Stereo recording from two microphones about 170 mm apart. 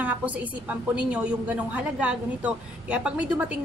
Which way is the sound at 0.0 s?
10° right (ahead or behind).